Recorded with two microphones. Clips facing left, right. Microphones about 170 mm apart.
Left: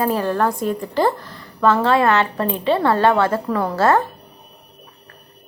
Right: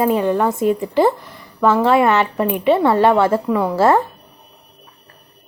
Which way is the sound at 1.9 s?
25° right (ahead or behind).